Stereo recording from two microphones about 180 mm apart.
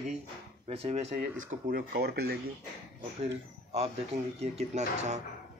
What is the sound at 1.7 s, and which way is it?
Speech, 55° right (ahead or behind).